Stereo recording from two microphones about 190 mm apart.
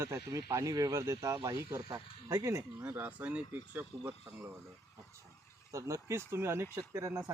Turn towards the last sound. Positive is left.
turn(degrees=-15)  # may be behind; listen again after turning